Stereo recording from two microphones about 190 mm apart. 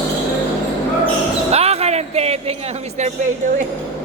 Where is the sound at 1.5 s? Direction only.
35° right (ahead or behind).